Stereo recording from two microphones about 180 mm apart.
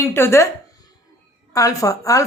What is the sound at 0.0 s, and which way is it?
Speech, 15° left (ahead or behind).